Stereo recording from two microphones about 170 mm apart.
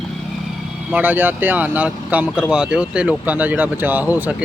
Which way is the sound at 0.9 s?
10° right (ahead or behind).